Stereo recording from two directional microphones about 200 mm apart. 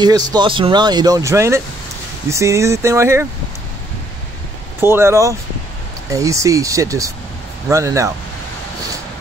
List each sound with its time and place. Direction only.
0.0 s speech: 20° right (ahead or behind)
4.7 s speech: 10° right (ahead or behind)